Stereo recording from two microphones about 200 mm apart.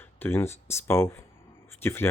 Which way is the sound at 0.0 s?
10° left (ahead or behind).